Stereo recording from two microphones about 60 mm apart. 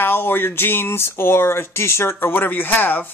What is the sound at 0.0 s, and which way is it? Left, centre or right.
A man's voice, left.